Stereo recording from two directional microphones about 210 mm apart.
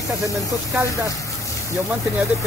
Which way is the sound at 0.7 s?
15° right (ahead or behind).